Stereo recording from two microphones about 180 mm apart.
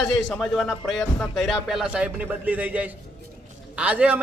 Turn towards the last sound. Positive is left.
turn(degrees=-5)  # may be behind; listen again after turning